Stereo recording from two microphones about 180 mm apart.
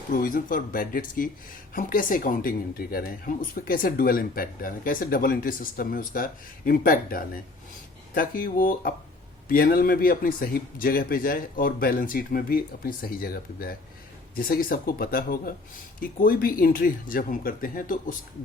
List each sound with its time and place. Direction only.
0.1 s speech: 50° left (ahead or behind)